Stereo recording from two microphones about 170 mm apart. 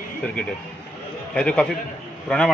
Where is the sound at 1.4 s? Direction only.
5° left (ahead or behind).